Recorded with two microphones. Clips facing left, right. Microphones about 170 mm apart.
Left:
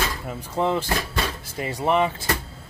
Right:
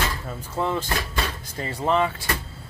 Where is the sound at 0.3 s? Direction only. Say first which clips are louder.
Left 5 dB; 15° left (ahead or behind).